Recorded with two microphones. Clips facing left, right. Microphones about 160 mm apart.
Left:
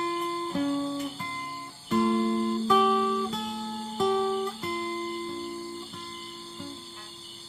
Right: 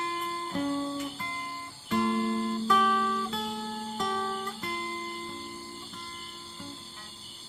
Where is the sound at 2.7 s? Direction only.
10° left (ahead or behind).